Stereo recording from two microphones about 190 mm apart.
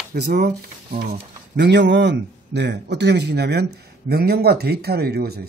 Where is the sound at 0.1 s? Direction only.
55° right (ahead or behind).